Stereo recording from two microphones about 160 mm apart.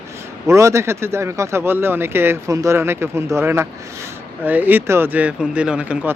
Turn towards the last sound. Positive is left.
turn(degrees=-10)  # may be behind; listen again after turning